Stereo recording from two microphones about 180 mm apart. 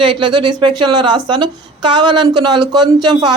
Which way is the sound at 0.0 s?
25° right (ahead or behind).